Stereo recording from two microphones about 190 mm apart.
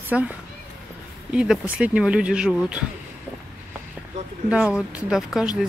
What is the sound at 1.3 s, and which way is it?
Speech, 5° right (ahead or behind).